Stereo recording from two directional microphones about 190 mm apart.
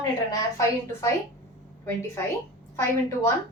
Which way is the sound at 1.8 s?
15° left (ahead or behind).